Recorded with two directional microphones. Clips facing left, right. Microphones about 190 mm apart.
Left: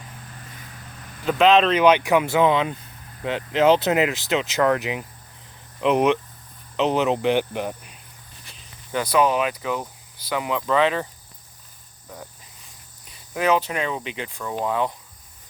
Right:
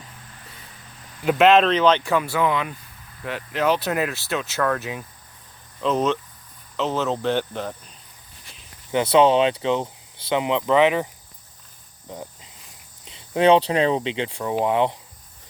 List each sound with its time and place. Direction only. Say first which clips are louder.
1.2 s speech: right 1 dB; 5° right (ahead or behind)
1.8 s speech: left 2 dB; 10° left (ahead or behind)
8.9 s speech: right 4 dB; 25° right (ahead or behind)
12.0 s cricket: right 4 dB; 20° right (ahead or behind)
13.1 s speech: right 5 dB; 25° right (ahead or behind)